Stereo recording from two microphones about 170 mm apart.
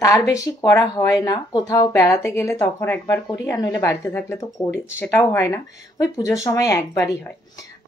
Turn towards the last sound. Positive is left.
turn(degrees=15)  # may be behind; listen again after turning